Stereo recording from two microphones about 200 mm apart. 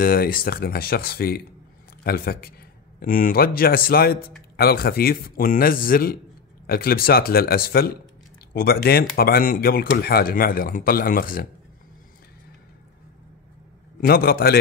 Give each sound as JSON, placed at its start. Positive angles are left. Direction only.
{"t": 0.0, "sound": "speech", "side_deg": 45}
{"t": 14.0, "sound": "speech", "side_deg": 50}